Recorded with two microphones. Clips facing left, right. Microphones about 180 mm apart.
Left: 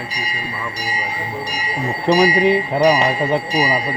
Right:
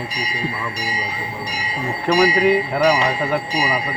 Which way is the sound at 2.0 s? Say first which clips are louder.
Left 1 dB; 20° left (ahead or behind).